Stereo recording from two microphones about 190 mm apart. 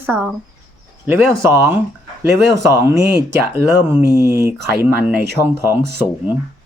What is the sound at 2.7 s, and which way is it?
Speech, 15° right (ahead or behind).